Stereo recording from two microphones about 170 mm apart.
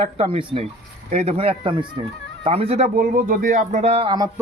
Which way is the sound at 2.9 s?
55° right (ahead or behind).